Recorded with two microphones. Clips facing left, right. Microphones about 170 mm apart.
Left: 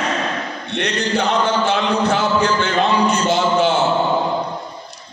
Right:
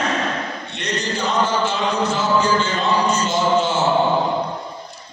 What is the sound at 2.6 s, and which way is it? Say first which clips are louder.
Music: left 3 dB; 60° left (ahead or behind).